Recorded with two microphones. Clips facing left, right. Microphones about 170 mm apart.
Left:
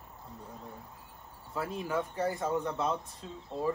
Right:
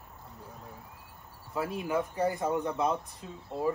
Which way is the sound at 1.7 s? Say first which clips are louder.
Right 2 dB; 15° right (ahead or behind).